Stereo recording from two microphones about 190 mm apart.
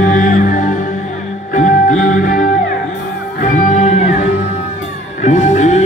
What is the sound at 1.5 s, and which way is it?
Music, 40° left (ahead or behind).